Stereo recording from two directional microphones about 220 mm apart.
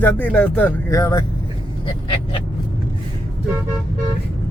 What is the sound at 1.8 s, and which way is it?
Vehicle, 20° left (ahead or behind).